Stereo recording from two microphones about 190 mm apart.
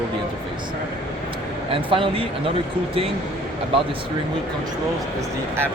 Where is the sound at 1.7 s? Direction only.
25° right (ahead or behind).